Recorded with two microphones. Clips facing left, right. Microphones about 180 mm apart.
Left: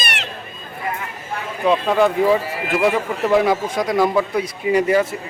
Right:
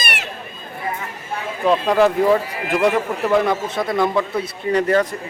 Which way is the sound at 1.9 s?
Centre (ahead or behind).